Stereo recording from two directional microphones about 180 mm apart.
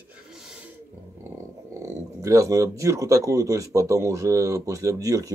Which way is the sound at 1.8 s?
15° right (ahead or behind).